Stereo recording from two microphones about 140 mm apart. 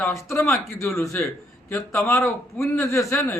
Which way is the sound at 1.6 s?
15° left (ahead or behind).